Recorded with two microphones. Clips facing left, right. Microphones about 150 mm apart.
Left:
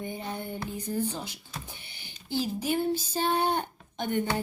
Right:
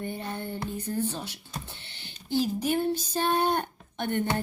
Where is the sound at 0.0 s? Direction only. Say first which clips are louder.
Right 1 dB; 15° left (ahead or behind).